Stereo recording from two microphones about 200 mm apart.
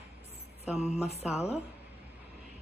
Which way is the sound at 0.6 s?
Centre (ahead or behind).